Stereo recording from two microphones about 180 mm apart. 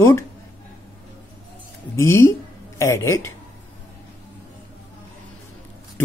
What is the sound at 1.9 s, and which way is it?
Speech, 15° left (ahead or behind).